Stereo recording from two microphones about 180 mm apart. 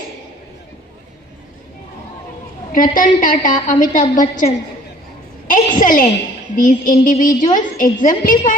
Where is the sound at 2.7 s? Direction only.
50° left (ahead or behind).